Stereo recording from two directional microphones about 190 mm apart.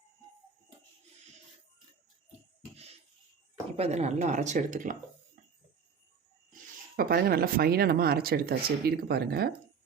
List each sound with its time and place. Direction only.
3.8 s speech: 35° right (ahead or behind)
6.5 s speech: 50° right (ahead or behind)